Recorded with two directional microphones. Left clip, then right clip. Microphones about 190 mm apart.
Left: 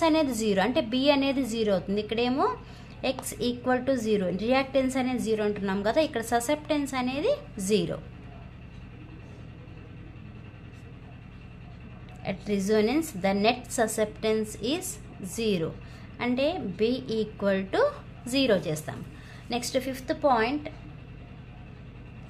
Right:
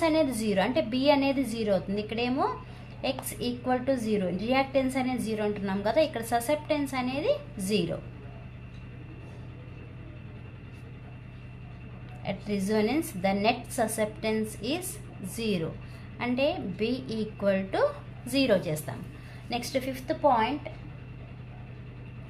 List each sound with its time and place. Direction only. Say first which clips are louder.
0.0 s a woman's voice: left 1 dB; 25° left (ahead or behind)
12.3 s a woman's voice: left 3 dB; 25° left (ahead or behind)